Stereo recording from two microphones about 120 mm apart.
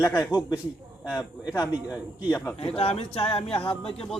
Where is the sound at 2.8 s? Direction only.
55° left (ahead or behind).